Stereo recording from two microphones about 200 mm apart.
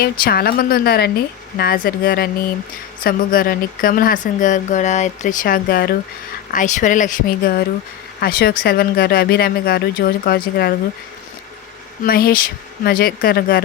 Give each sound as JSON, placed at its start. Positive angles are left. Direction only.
{"t": 0.0, "sound": "speech", "side_deg": 50}
{"t": 6.5, "sound": "speech", "side_deg": 40}
{"t": 12.0, "sound": "speech", "side_deg": 50}